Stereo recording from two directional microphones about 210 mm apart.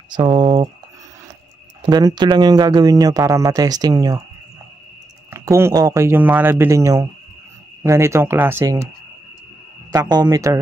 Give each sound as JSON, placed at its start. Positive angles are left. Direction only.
{"t": 0.1, "sound": "speech", "side_deg": -20}
{"t": 1.8, "sound": "speech", "side_deg": -20}
{"t": 5.3, "sound": "speech", "side_deg": -15}
{"t": 9.8, "sound": "speech", "side_deg": -20}